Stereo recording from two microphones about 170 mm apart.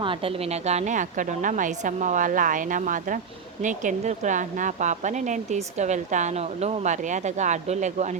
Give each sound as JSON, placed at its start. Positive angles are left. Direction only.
{"t": 0.0, "sound": "a woman's voice", "side_deg": -30}